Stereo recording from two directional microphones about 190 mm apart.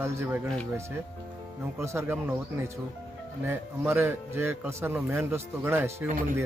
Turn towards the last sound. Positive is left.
turn(degrees=-10)  # may be behind; listen again after turning